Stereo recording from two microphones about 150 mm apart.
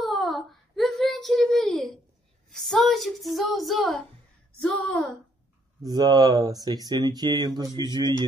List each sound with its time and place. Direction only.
0.0 s child singing: centre (ahead or behind)
2.6 s speech: centre (ahead or behind)
5.8 s speech: 25° right (ahead or behind)